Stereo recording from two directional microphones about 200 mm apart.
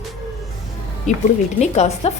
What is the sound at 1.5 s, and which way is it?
Speech, 35° left (ahead or behind).